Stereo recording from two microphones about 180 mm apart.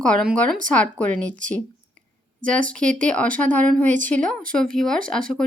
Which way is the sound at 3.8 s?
45° right (ahead or behind).